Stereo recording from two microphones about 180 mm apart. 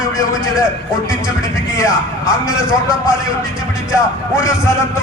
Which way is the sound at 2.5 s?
5° right (ahead or behind).